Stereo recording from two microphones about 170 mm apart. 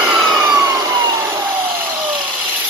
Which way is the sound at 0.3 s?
20° right (ahead or behind).